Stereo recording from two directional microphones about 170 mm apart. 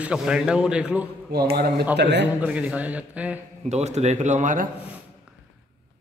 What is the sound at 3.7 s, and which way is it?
Speech, 40° right (ahead or behind).